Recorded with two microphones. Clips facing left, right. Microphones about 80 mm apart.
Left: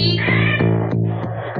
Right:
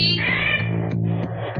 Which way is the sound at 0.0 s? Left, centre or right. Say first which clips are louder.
Left 5 dB; left.